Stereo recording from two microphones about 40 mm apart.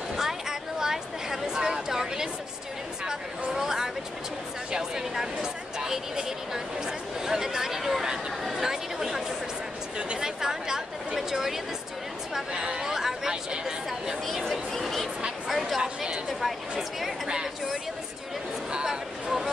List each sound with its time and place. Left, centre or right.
0.1 s a sound: centre
3.1 s speech: centre
10.2 s speech: centre
12.4 s chatter: centre
13.3 s speech: right
14.5 s a sound: centre
15.8 s a woman's voice: centre
16.3 s speech: centre
17.3 s speech: centre
18.9 s a sound: centre